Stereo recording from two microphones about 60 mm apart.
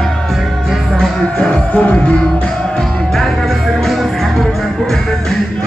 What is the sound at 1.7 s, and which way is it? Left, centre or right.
Music, left.